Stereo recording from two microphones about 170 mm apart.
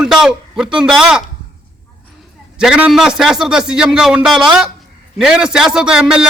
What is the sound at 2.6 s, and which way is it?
A man's voice, 5° right (ahead or behind).